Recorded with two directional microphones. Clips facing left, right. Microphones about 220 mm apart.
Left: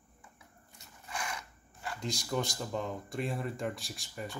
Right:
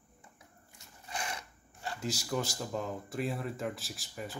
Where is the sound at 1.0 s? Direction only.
30° right (ahead or behind).